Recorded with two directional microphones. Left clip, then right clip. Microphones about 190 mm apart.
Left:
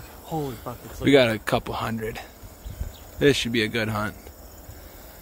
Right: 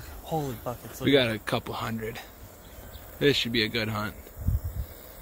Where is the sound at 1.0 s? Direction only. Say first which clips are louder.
Left 5 dB; 20° left (ahead or behind).